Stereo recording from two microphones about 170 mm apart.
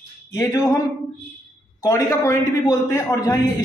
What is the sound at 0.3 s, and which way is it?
Speech, 20° left (ahead or behind).